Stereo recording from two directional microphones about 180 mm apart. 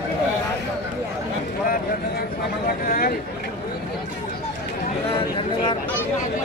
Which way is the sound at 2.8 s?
55° left (ahead or behind).